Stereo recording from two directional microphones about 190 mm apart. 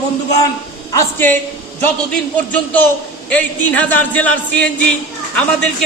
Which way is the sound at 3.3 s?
10° left (ahead or behind).